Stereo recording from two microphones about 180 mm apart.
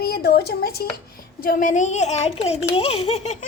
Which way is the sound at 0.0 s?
60° left (ahead or behind).